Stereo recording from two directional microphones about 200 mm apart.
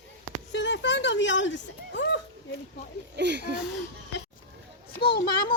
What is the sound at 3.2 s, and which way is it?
Speech, 60° right (ahead or behind).